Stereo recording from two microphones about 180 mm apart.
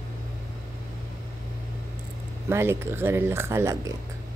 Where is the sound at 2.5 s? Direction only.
15° right (ahead or behind).